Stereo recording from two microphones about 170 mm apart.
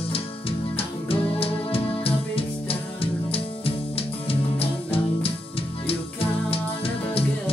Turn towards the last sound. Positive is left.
turn(degrees=35)  # may be behind; listen again after turning